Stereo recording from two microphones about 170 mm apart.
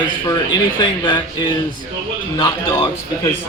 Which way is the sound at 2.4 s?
20° left (ahead or behind).